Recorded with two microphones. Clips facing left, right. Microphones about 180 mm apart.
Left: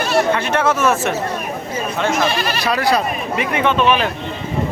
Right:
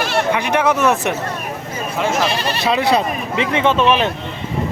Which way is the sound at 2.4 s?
35° right (ahead or behind).